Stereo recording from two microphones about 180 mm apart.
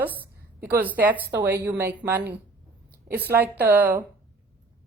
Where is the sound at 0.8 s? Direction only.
10° right (ahead or behind).